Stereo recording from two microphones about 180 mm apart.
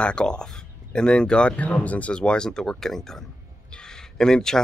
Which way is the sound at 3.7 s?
5° left (ahead or behind).